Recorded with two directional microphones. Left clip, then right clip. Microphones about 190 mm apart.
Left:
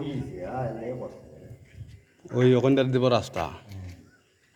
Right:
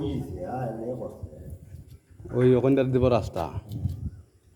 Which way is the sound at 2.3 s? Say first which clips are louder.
Even; centre (ahead or behind).